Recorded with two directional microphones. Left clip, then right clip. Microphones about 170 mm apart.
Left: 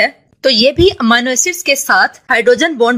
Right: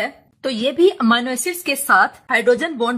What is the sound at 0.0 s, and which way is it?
A woman's voice, 35° left (ahead or behind).